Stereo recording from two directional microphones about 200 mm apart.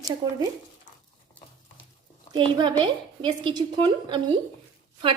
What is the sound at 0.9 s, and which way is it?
Dog, 35° left (ahead or behind).